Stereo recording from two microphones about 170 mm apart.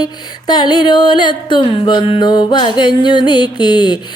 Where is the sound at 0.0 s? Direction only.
25° left (ahead or behind).